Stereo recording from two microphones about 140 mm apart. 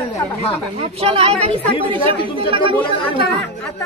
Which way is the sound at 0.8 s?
45° right (ahead or behind).